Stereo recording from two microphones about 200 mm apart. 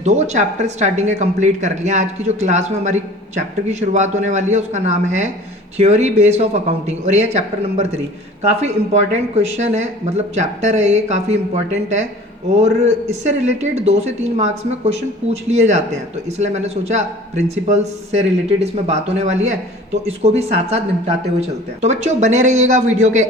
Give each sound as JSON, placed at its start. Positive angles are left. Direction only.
{"t": 0.0, "sound": "speech", "side_deg": -35}